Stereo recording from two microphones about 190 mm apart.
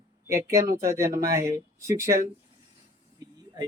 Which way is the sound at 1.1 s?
50° right (ahead or behind).